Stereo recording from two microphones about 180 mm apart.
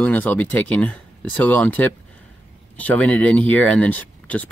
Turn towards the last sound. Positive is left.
turn(degrees=10)  # may be behind; listen again after turning